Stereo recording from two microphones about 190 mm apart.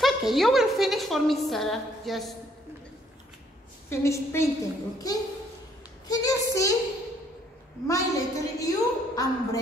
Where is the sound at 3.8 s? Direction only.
15° left (ahead or behind).